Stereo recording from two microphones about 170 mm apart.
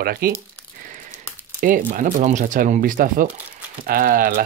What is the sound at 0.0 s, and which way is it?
Speech, 60° right (ahead or behind).